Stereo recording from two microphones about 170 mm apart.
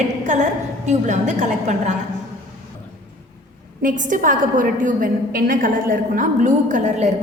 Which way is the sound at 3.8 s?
50° right (ahead or behind).